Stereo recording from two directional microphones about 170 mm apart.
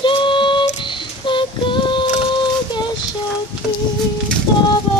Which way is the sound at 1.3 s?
30° left (ahead or behind).